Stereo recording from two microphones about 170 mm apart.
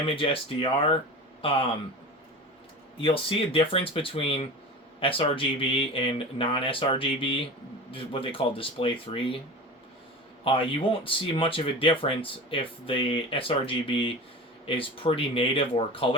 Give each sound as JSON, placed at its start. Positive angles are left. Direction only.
{"t": 0.0, "sound": "speech", "side_deg": 30}
{"t": 3.0, "sound": "speech", "side_deg": 30}
{"t": 10.4, "sound": "speech", "side_deg": 30}